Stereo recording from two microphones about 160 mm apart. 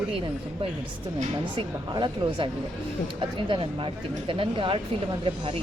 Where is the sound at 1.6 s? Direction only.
30° right (ahead or behind).